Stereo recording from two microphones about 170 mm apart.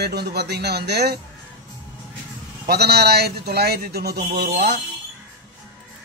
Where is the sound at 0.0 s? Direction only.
70° right (ahead or behind).